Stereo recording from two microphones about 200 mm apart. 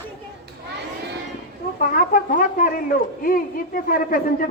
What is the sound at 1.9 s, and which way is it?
Speech, 45° left (ahead or behind).